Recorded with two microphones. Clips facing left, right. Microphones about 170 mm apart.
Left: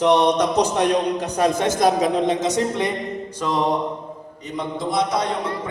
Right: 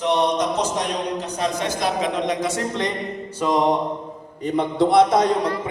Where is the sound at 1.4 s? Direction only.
45° left (ahead or behind).